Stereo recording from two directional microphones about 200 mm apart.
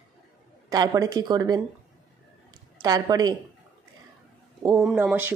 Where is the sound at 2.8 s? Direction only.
20° right (ahead or behind).